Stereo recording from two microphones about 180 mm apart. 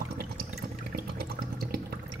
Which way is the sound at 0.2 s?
60° right (ahead or behind).